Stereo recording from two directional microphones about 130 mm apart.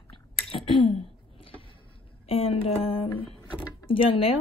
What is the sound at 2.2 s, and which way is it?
Speech, 45° left (ahead or behind).